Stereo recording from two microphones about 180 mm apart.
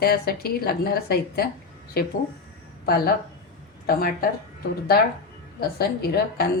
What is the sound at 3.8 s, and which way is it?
Speech, 55° left (ahead or behind).